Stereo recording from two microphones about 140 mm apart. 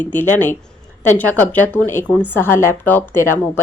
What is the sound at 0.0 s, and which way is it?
A woman's voice, 15° left (ahead or behind).